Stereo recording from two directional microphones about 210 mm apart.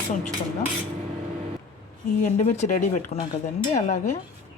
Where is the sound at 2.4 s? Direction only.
35° left (ahead or behind).